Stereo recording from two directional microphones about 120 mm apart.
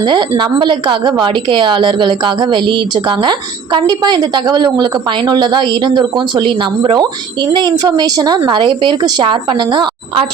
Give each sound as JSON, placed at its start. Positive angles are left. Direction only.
{"t": 0.0, "sound": "a woman's voice", "side_deg": -40}